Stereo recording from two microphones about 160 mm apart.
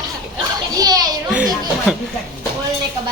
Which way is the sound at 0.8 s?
25° right (ahead or behind).